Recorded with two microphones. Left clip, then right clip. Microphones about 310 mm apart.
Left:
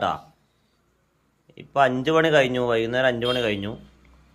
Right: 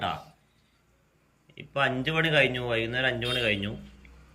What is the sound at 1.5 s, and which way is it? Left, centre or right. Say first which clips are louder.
Speech: left 7 dB; centre.